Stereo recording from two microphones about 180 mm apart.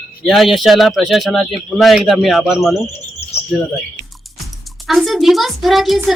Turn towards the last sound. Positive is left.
turn(degrees=0)  # may be behind; listen again after turning